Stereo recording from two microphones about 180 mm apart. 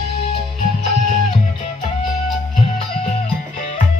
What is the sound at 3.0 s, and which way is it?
Music, 35° left (ahead or behind).